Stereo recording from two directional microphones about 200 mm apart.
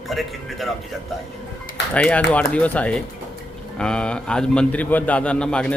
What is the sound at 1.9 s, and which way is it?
A man's voice, 5° left (ahead or behind).